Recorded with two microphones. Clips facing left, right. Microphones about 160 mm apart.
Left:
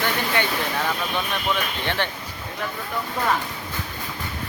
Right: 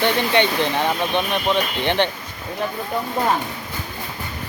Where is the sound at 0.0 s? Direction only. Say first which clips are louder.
Right 6 dB; 25° right (ahead or behind).